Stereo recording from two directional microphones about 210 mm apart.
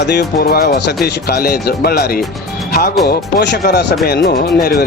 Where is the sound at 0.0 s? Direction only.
50° left (ahead or behind).